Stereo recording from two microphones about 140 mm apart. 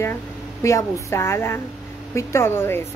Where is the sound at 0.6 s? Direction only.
20° left (ahead or behind).